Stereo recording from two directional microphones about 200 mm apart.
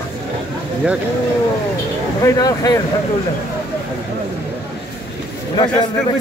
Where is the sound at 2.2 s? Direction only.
20° left (ahead or behind).